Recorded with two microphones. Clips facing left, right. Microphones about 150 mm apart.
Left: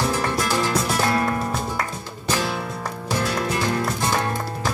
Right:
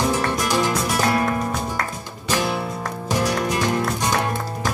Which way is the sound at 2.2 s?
15° right (ahead or behind).